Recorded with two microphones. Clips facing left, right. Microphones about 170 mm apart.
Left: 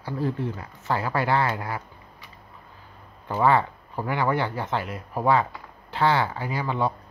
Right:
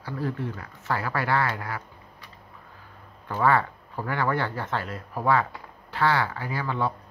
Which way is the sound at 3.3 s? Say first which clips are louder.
Left 2 dB; 20° left (ahead or behind).